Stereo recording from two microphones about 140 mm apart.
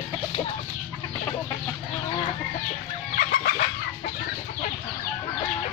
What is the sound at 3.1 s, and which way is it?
Chicken, 90° left.